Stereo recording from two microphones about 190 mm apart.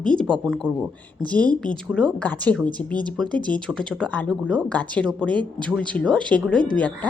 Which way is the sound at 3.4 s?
25° right (ahead or behind).